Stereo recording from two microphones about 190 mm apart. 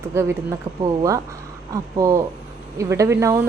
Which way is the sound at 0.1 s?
15° right (ahead or behind).